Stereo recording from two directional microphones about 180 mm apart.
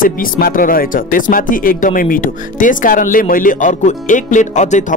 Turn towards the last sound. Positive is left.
turn(degrees=45)  # may be behind; listen again after turning